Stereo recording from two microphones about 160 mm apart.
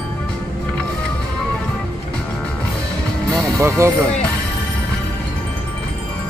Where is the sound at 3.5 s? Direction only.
20° right (ahead or behind).